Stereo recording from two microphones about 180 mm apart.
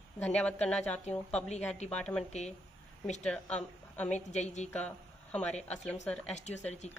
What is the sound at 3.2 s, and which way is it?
A woman's voice, 5° left (ahead or behind).